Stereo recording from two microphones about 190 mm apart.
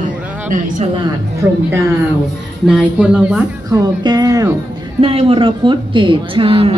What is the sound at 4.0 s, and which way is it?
A woman's voice, 20° right (ahead or behind).